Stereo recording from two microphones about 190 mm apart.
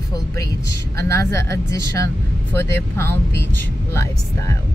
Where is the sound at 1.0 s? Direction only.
15° left (ahead or behind).